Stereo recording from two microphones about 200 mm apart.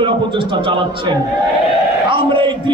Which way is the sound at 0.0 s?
25° right (ahead or behind).